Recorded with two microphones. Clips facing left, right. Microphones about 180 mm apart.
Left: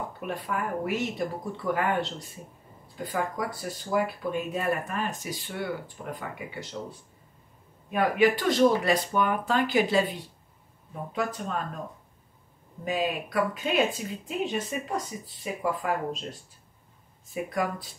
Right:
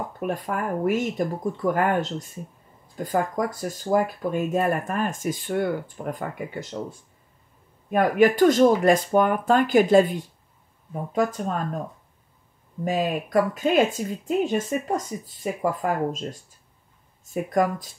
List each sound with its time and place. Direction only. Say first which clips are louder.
0.2 s speech: right 5 dB; 45° right (ahead or behind)
7.9 s speech: right 4 dB; 45° right (ahead or behind)
12.8 s speech: right 4 dB; 45° right (ahead or behind)